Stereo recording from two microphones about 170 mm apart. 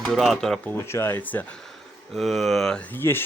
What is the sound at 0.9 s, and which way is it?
Speech, 15° left (ahead or behind).